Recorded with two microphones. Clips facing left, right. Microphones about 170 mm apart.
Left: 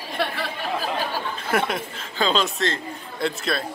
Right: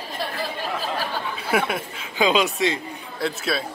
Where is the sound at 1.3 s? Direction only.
5° right (ahead or behind).